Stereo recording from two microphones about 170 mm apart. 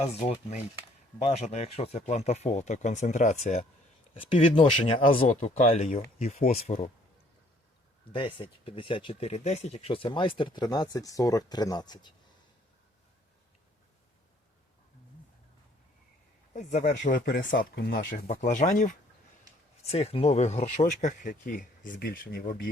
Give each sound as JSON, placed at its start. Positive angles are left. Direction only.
{"t": 0.0, "sound": "speech", "side_deg": 40}
{"t": 4.2, "sound": "speech", "side_deg": 30}
{"t": 8.1, "sound": "speech", "side_deg": 30}
{"t": 16.6, "sound": "speech", "side_deg": 45}
{"t": 19.8, "sound": "speech", "side_deg": 40}